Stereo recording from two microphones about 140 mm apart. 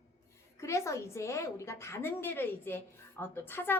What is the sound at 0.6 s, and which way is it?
A woman's voice, 20° left (ahead or behind).